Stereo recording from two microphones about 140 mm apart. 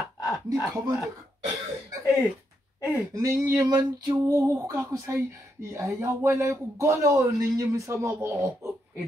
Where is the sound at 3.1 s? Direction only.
25° right (ahead or behind).